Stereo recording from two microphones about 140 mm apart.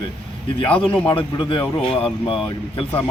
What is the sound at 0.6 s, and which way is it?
Speech, 40° left (ahead or behind).